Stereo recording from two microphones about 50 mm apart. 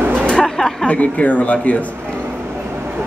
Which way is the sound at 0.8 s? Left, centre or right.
Left.